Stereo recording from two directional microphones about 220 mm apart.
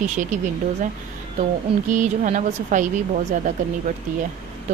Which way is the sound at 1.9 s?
35° right (ahead or behind).